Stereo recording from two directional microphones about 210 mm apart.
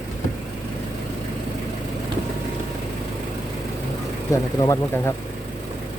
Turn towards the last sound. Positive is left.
turn(degrees=15)  # may be behind; listen again after turning